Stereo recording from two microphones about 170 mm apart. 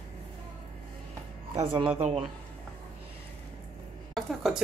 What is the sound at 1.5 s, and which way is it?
Speech, 30° right (ahead or behind).